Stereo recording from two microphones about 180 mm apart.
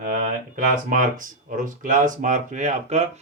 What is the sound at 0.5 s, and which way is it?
Speech, 50° right (ahead or behind).